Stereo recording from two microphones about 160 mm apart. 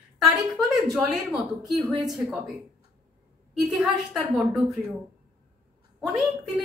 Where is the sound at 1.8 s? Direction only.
20° right (ahead or behind).